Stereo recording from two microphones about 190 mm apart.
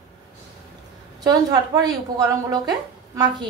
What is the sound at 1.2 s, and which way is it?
A woman's voice, 20° right (ahead or behind).